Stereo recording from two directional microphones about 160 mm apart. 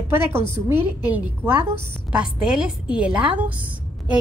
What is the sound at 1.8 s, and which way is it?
A woman's voice, 5° right (ahead or behind).